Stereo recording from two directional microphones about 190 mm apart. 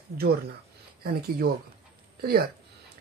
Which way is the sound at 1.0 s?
55° right (ahead or behind).